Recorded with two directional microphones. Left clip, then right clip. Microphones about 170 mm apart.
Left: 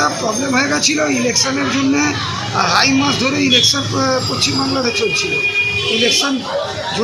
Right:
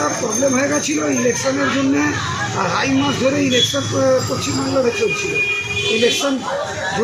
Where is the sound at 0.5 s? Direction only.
15° left (ahead or behind).